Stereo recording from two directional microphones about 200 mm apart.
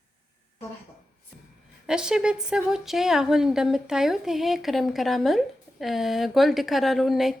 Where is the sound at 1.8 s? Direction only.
5° right (ahead or behind).